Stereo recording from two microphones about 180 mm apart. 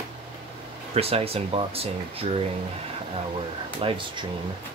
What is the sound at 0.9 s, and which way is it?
Speech, 35° right (ahead or behind).